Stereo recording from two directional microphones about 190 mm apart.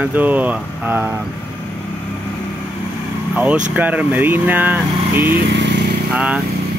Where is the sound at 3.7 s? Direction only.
5° right (ahead or behind).